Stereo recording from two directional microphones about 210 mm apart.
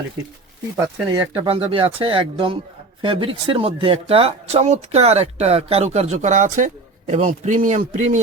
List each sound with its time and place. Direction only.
1.1 s a man's voice: 25° right (ahead or behind)